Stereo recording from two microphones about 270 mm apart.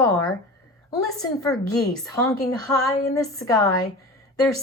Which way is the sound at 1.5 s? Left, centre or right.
Centre.